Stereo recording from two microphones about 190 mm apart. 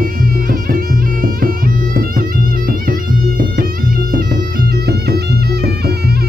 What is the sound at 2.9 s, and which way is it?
Music, 50° right (ahead or behind).